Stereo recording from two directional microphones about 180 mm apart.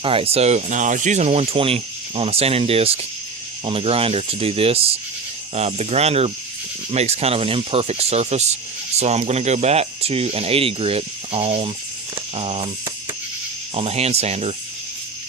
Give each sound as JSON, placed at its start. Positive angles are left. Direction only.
{"t": 0.0, "sound": "speech", "side_deg": -30}